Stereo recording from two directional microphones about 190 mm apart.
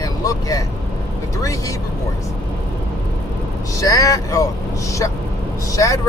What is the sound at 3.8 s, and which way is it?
Speech, 20° left (ahead or behind).